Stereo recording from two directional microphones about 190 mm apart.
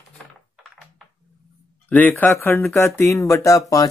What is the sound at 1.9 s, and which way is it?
Speech, 10° left (ahead or behind).